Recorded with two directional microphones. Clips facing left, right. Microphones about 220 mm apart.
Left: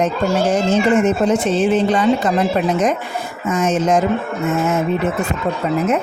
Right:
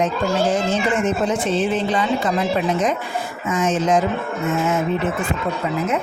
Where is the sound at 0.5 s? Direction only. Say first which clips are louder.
Left 5 dB; 40° left (ahead or behind).